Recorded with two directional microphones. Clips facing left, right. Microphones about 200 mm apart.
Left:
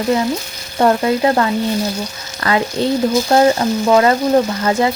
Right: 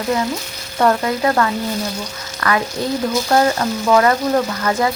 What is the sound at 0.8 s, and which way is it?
A woman's voice, 25° left (ahead or behind).